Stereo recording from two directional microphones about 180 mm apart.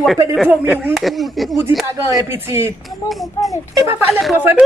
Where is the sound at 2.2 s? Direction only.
15° right (ahead or behind).